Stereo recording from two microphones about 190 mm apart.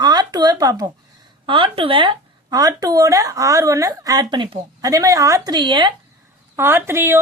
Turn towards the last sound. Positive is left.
turn(degrees=-15)  # may be behind; listen again after turning